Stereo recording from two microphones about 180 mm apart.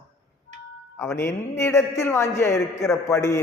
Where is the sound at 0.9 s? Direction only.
15° left (ahead or behind).